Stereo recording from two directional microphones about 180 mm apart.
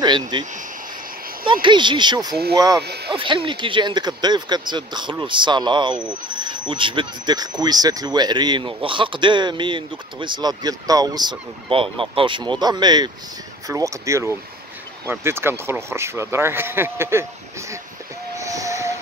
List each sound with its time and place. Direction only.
0.0 s speech: 25° right (ahead or behind)
2.8 s speech: 65° right (ahead or behind)
3.1 s speech: 25° right (ahead or behind)
18.4 s train: 15° right (ahead or behind)